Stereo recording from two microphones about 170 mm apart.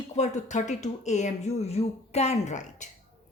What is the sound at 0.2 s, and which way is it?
A woman's voice, 45° left (ahead or behind).